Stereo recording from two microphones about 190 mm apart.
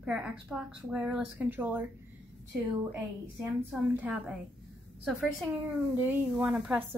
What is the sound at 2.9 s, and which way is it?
A woman's voice, 10° right (ahead or behind).